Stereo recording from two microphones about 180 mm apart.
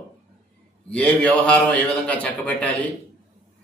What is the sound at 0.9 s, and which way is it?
A man's voice, 5° left (ahead or behind).